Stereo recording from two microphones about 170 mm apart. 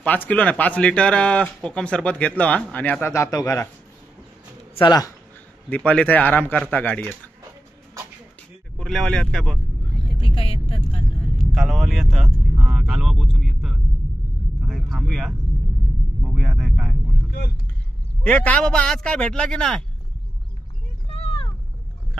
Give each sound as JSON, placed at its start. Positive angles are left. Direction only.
{"t": 0.0, "sound": "speech", "side_deg": 10}
{"t": 4.7, "sound": "speech", "side_deg": 25}
{"t": 5.7, "sound": "speech", "side_deg": 5}
{"t": 8.7, "sound": "speech", "side_deg": 0}
{"t": 10.3, "sound": "vehicle", "side_deg": 35}
{"t": 11.3, "sound": "speech", "side_deg": 0}
{"t": 14.6, "sound": "vehicle", "side_deg": 0}
{"t": 16.2, "sound": "speech", "side_deg": 0}
{"t": 18.2, "sound": "speech", "side_deg": 5}
{"t": 21.1, "sound": "vehicle", "side_deg": 35}